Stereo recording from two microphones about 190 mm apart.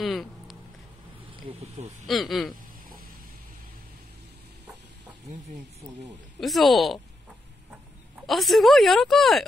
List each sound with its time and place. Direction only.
0.0 s a sound: centre (ahead or behind)
1.6 s speech: 35° right (ahead or behind)
2.0 s speech: centre (ahead or behind)
6.4 s speech: centre (ahead or behind)
8.3 s speech: centre (ahead or behind)